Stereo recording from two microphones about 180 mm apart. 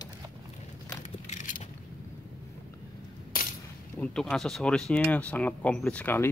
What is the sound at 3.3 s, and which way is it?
Coin, 50° left (ahead or behind).